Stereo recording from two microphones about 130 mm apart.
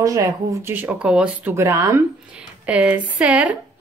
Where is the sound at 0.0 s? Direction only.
25° right (ahead or behind); by 1.5 s 5° right (ahead or behind).